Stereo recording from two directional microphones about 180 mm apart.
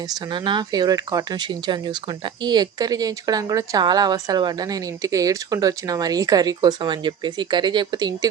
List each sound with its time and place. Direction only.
0.1 s speech: 25° right (ahead or behind)